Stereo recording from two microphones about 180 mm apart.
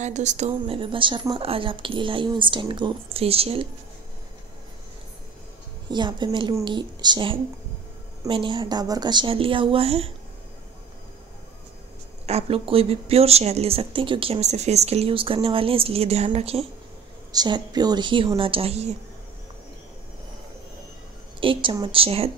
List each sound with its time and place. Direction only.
0.0 s a woman's voice: 40° right (ahead or behind)
5.9 s a woman's voice: 25° right (ahead or behind)
12.3 s speech: 35° right (ahead or behind)
17.3 s a woman's voice: 20° right (ahead or behind)
21.4 s a woman's voice: 30° right (ahead or behind)